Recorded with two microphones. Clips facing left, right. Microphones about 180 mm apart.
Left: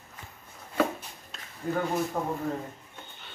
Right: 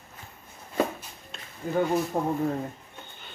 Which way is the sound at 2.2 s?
35° right (ahead or behind).